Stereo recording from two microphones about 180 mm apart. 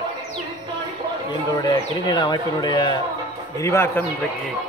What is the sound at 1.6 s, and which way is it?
Speech, 25° left (ahead or behind).